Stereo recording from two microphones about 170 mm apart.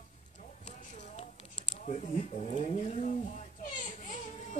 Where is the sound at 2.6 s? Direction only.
40° left (ahead or behind).